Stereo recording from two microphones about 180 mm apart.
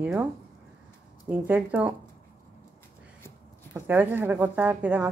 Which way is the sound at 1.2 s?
10° right (ahead or behind).